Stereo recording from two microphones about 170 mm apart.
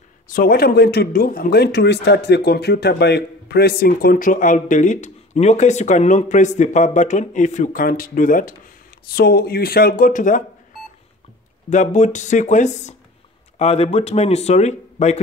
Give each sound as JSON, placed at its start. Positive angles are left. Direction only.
{"t": 0.3, "sound": "speech", "side_deg": 60}
{"t": 9.1, "sound": "speech", "side_deg": 65}
{"t": 11.7, "sound": "speech", "side_deg": 45}